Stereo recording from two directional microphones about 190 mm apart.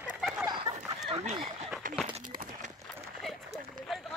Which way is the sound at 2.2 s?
45° right (ahead or behind).